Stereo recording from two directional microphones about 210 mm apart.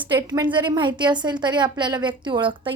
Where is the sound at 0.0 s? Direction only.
20° right (ahead or behind).